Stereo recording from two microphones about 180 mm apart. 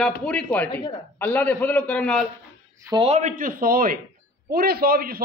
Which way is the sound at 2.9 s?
30° right (ahead or behind).